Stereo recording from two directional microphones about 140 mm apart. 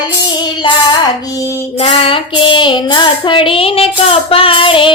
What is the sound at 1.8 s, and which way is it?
Child singing, 45° left (ahead or behind).